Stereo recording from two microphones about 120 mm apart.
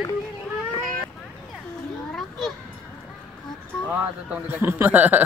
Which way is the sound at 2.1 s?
5° left (ahead or behind).